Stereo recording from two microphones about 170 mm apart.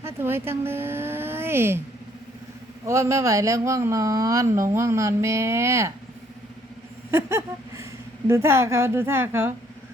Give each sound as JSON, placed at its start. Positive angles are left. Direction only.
{"t": 0.0, "sound": "speech", "side_deg": -15}
{"t": 2.8, "sound": "speech", "side_deg": -15}
{"t": 7.1, "sound": "a sound", "side_deg": -15}
{"t": 8.3, "sound": "speech", "side_deg": -15}